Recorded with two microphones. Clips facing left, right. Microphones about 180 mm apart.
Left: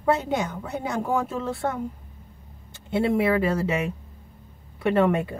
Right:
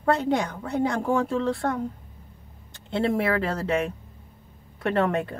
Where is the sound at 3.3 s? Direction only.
10° left (ahead or behind).